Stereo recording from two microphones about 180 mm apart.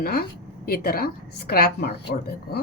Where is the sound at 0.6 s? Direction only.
60° left (ahead or behind).